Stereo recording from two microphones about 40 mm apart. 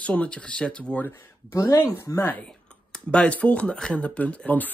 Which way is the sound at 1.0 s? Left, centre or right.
Left.